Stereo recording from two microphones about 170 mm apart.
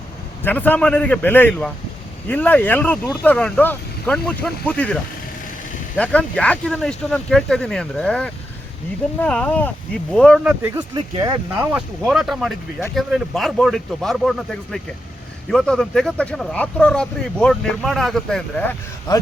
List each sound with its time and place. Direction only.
0.4 s speech: 10° left (ahead or behind)
6.0 s speech: 5° left (ahead or behind)
10.4 s speech: 10° right (ahead or behind)
10.9 s speech: 20° right (ahead or behind)
11.5 s speech: 10° right (ahead or behind)
19.1 s a man's voice: 25° left (ahead or behind)